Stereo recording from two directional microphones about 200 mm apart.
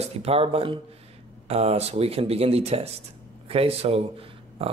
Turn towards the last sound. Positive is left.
turn(degrees=-30)  # may be behind; listen again after turning